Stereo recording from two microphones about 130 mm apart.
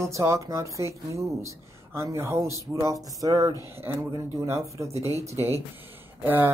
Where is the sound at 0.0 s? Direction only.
20° right (ahead or behind).